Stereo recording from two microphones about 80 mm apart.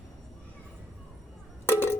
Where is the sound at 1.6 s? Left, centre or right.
Left.